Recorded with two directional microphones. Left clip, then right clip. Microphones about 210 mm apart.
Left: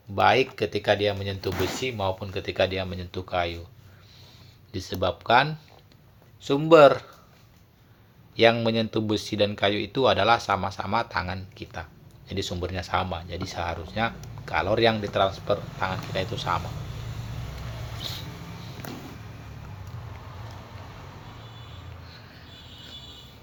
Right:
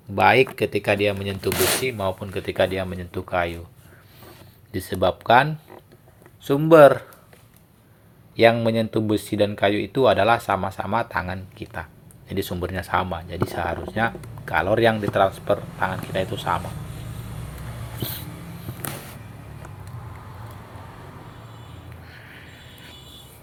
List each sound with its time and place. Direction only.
0.2 s speech: 20° right (ahead or behind)
4.7 s speech: 20° right (ahead or behind)
8.4 s speech: 10° right (ahead or behind)